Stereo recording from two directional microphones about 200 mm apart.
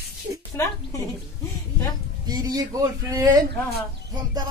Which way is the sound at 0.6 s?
15° left (ahead or behind).